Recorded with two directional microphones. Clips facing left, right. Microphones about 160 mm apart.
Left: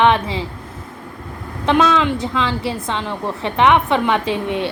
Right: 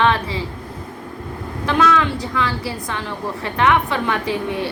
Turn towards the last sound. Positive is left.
turn(degrees=20)  # may be behind; listen again after turning